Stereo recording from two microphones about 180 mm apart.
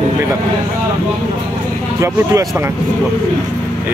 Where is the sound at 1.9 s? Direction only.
15° right (ahead or behind).